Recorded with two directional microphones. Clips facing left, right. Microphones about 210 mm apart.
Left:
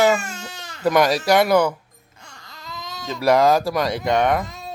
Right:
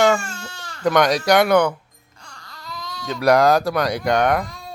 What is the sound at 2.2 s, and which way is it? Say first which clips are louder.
Baby cry: even; 20° left (ahead or behind).